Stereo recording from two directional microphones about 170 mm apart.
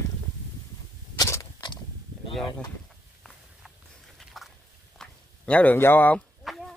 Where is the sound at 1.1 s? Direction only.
20° left (ahead or behind).